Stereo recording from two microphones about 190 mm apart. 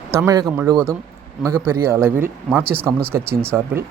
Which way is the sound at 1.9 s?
15° right (ahead or behind).